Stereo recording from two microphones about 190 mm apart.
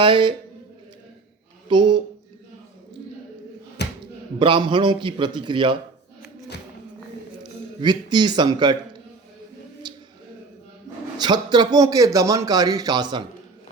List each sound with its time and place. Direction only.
0.0 s a man's voice: 25° right (ahead or behind)
1.6 s a woman's voice: 25° right (ahead or behind)
3.8 s a sound: 60° left (ahead or behind)
4.4 s a man's voice: 25° right (ahead or behind)
7.8 s a man's voice: 25° right (ahead or behind)
9.8 s a sound: 20° right (ahead or behind)
11.2 s a man's voice: 25° right (ahead or behind)